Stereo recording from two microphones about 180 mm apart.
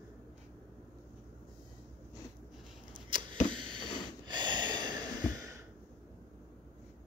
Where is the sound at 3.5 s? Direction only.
25° right (ahead or behind).